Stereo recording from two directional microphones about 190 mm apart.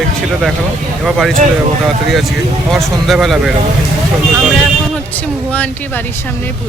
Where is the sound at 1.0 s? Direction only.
Centre (ahead or behind).